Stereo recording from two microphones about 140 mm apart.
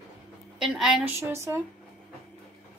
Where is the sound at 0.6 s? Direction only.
5° right (ahead or behind).